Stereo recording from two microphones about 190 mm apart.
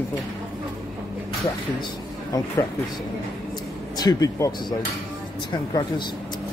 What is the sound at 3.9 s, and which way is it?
Speech, 20° left (ahead or behind).